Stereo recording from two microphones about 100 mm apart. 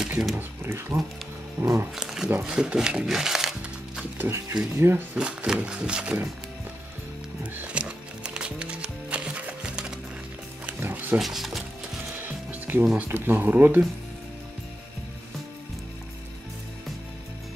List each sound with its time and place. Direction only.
0.4 s speech: 25° right (ahead or behind)
2.0 s speech: 5° right (ahead or behind)
4.2 s speech: 25° right (ahead or behind)
5.1 s speech: 10° right (ahead or behind)
7.5 s music: 10° right (ahead or behind)
10.8 s music: 20° right (ahead or behind)
11.1 s speech: centre (ahead or behind)
12.2 s music: 20° right (ahead or behind)
13.1 s speech: 20° right (ahead or behind)